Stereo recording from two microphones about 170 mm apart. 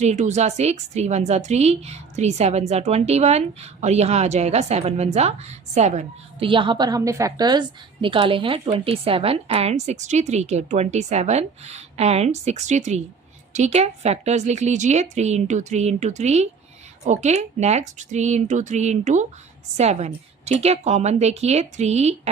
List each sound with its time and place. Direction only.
0.0 s a woman's voice: 40° right (ahead or behind)
6.5 s a woman's voice: 30° right (ahead or behind)